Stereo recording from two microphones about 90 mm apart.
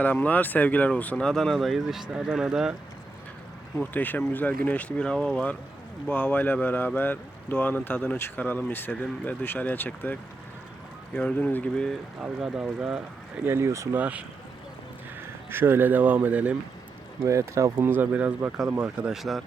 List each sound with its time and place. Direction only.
0.0 s speech: 20° left (ahead or behind)
1.1 s speech: 5° left (ahead or behind)
3.9 s speech: 20° left (ahead or behind)
6.1 s speech: 20° left (ahead or behind)
11.1 s speech: 10° left (ahead or behind)
12.2 s speech: 10° right (ahead or behind)
13.4 s speech: 30° right (ahead or behind)
13.9 s speech: 15° right (ahead or behind)
15.4 s speech: 25° right (ahead or behind)
17.2 s speech: 35° right (ahead or behind); by 19.4 s 5° right (ahead or behind)